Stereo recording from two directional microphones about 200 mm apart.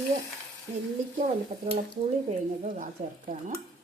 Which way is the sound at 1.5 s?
45° right (ahead or behind).